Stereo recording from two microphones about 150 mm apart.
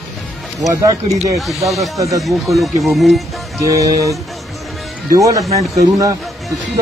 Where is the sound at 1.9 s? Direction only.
20° right (ahead or behind).